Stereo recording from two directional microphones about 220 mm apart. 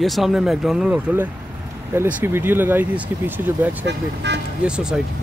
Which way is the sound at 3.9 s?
50° right (ahead or behind).